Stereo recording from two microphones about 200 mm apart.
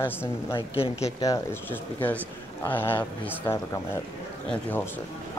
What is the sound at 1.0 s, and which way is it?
Speech, 15° left (ahead or behind).